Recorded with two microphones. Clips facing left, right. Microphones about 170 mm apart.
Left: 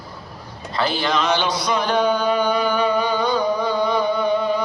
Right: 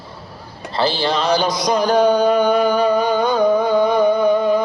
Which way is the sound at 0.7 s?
30° right (ahead or behind).